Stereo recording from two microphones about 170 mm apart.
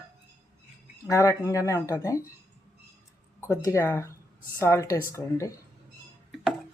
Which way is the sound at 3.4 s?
15° left (ahead or behind).